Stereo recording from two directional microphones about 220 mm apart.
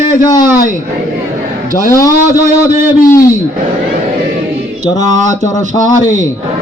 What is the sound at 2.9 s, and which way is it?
Speech, 40° left (ahead or behind).